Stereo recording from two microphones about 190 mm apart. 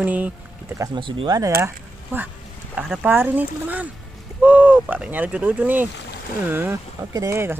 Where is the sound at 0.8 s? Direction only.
25° right (ahead or behind).